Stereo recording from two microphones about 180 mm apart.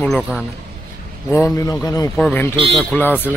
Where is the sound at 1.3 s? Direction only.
15° left (ahead or behind).